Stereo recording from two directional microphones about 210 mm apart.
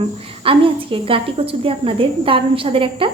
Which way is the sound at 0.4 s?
25° right (ahead or behind).